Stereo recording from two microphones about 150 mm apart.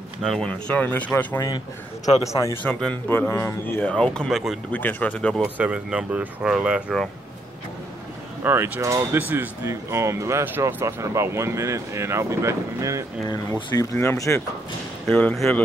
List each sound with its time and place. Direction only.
0.2 s speech: 5° left (ahead or behind); by 2.5 s 20° left (ahead or behind)
2.6 s speech: 5° left (ahead or behind)
4.7 s speech: 10° left (ahead or behind)
5.4 s speech: 10° right (ahead or behind)
8.5 s speech: 15° right (ahead or behind)
13.9 s speech: 15° left (ahead or behind)